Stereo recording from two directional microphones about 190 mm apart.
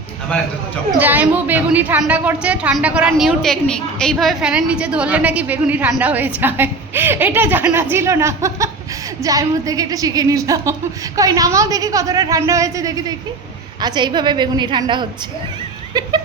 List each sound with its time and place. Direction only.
0.9 s a woman's voice: 10° right (ahead or behind); by 15.0 s 25° right (ahead or behind)